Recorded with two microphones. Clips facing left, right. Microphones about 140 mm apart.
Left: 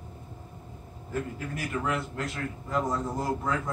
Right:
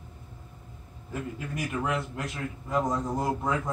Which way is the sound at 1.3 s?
20° right (ahead or behind).